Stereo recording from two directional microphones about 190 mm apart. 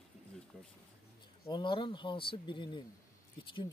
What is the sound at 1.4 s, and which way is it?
Speech, 25° left (ahead or behind).